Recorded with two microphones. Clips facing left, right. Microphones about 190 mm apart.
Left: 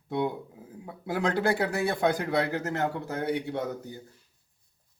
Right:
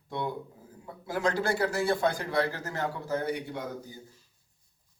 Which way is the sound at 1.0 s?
60° left (ahead or behind).